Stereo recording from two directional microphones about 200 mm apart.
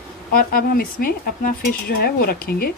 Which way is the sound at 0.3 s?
45° left (ahead or behind).